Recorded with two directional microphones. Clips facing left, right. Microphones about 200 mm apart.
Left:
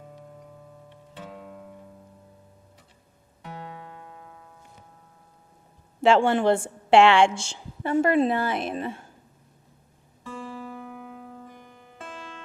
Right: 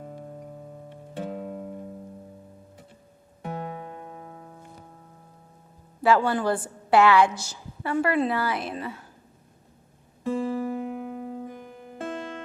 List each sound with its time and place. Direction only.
0.0 s music: 50° right (ahead or behind)
3.4 s music: 50° right (ahead or behind)
3.8 s music: 30° right (ahead or behind)
6.0 s a woman's voice: 25° left (ahead or behind)
10.2 s music: 55° right (ahead or behind)
11.2 s music: 15° right (ahead or behind)
11.4 s music: 55° right (ahead or behind)